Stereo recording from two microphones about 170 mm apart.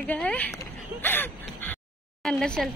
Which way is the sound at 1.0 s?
10° left (ahead or behind).